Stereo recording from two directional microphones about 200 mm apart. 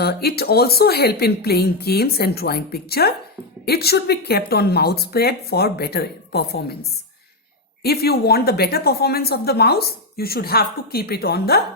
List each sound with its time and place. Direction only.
0.0 s a woman's voice: 50° left (ahead or behind)
7.8 s a woman's voice: 50° left (ahead or behind)